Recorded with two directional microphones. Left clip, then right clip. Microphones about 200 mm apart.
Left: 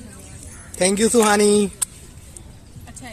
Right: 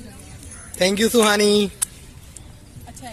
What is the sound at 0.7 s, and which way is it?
Speech, 10° left (ahead or behind).